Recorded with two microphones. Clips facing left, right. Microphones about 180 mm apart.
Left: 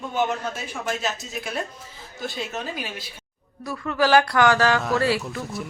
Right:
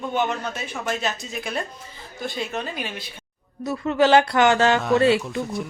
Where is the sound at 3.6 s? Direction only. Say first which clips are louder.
Right 4 dB; 25° right (ahead or behind).